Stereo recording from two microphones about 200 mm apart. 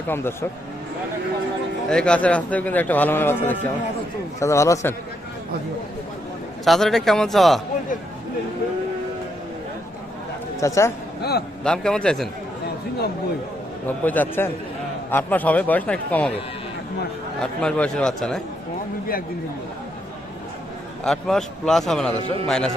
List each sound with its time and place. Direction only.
0.1 s speech: 10° left (ahead or behind)
1.9 s speech: 5° left (ahead or behind)
6.7 s a man's voice: centre (ahead or behind)
10.6 s speech: 15° left (ahead or behind)
11.2 s a man's voice: 55° left (ahead or behind)
11.6 s a man's voice: 5° left (ahead or behind)
13.8 s speech: 10° left (ahead or behind)
17.4 s a man's voice: 5° left (ahead or behind)
21.0 s a man's voice: centre (ahead or behind)